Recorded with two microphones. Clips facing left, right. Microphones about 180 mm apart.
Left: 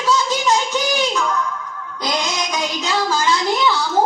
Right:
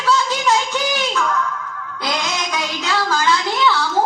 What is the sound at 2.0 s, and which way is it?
Music, 15° left (ahead or behind).